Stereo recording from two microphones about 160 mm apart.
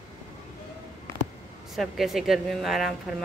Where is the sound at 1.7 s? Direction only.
Centre (ahead or behind).